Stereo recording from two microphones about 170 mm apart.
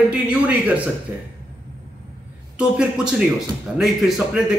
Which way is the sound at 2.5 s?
5° right (ahead or behind).